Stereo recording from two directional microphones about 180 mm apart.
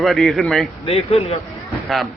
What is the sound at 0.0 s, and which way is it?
Speech, centre (ahead or behind).